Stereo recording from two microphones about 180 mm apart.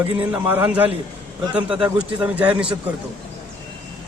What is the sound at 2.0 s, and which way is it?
Speech, 10° right (ahead or behind).